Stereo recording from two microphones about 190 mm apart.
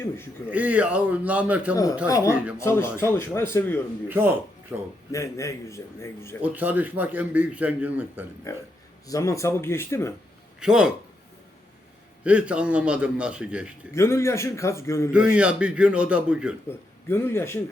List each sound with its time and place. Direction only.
0.5 s a man's voice: 5° right (ahead or behind)
1.7 s a man's voice: 15° left (ahead or behind)
2.3 s a man's voice: 5° right (ahead or behind)
2.6 s a man's voice: 15° left (ahead or behind)
4.1 s a man's voice: 10° right (ahead or behind)
5.1 s a man's voice: 15° left (ahead or behind)
6.4 s a man's voice: 10° right (ahead or behind)
8.5 s a man's voice: 15° left (ahead or behind)
10.6 s a man's voice: 5° right (ahead or behind)
12.2 s a man's voice: 5° right (ahead or behind)
13.9 s a man's voice: 15° left (ahead or behind)
15.1 s a man's voice: 5° right (ahead or behind)
16.6 s a man's voice: 10° left (ahead or behind)